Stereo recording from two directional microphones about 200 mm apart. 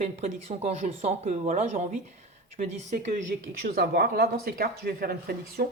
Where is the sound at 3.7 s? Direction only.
50° right (ahead or behind).